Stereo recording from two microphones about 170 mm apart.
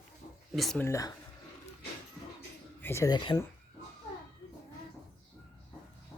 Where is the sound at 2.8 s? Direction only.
15° left (ahead or behind).